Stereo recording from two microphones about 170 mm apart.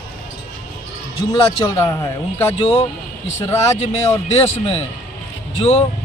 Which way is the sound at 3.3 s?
15° left (ahead or behind).